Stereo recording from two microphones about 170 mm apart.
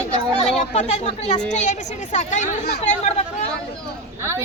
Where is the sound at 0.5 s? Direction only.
40° left (ahead or behind).